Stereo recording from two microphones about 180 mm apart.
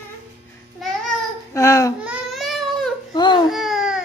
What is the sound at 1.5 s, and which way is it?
Baby cry, 15° left (ahead or behind).